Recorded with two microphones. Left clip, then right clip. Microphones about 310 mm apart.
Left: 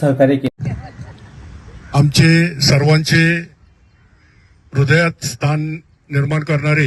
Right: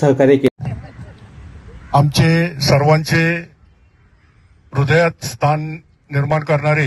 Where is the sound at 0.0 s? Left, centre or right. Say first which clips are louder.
Right 2 dB; centre.